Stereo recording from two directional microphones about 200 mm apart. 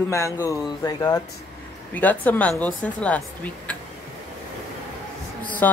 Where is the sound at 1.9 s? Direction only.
10° left (ahead or behind).